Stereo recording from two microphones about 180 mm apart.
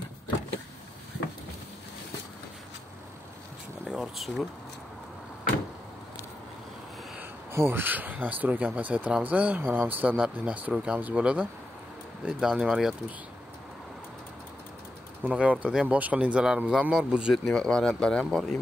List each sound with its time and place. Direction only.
3.8 s a sound: 5° right (ahead or behind)
7.2 s speech: 10° right (ahead or behind)
15.2 s speech: 5° right (ahead or behind)